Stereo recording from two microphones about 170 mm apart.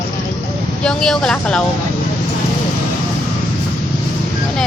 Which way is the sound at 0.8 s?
5° left (ahead or behind).